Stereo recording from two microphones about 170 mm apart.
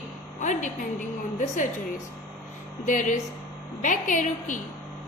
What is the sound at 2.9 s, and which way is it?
A woman's voice, 50° left (ahead or behind).